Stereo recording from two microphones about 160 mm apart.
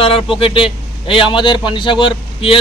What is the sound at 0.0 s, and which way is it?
A man's voice, 35° left (ahead or behind).